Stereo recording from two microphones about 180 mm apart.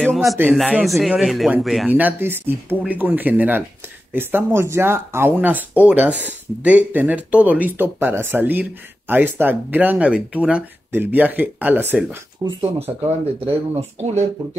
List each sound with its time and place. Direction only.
0.0 s a sound: centre (ahead or behind)
0.5 s speech: centre (ahead or behind)
12.4 s speech: 35° right (ahead or behind)
13.9 s speech: 40° right (ahead or behind)